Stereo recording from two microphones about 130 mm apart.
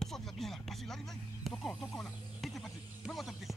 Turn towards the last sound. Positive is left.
turn(degrees=0)  # may be behind; listen again after turning